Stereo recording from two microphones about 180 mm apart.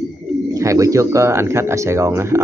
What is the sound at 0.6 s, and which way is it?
Speech, 15° right (ahead or behind).